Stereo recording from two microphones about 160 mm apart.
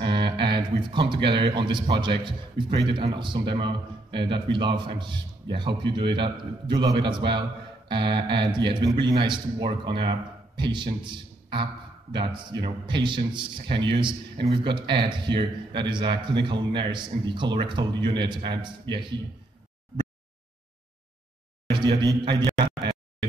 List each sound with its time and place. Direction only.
0.0 s a sound: 30° right (ahead or behind)
0.6 s speech: 30° right (ahead or behind)
21.6 s speech: 25° right (ahead or behind)